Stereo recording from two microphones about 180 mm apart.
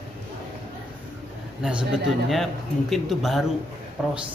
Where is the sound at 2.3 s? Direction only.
Centre (ahead or behind).